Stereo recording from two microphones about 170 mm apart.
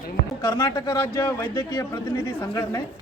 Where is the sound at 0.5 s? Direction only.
20° left (ahead or behind).